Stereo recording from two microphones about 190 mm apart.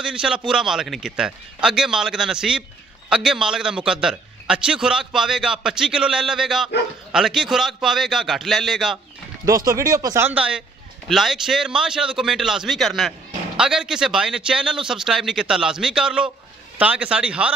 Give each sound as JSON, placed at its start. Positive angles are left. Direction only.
{"t": 0.0, "sound": "a man's voice", "side_deg": -5}
{"t": 9.5, "sound": "a man's voice", "side_deg": -15}